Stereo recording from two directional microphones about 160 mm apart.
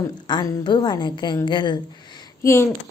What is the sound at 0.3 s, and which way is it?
A woman's voice, 30° left (ahead or behind).